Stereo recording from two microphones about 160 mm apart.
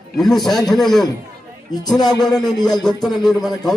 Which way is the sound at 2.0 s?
25° left (ahead or behind).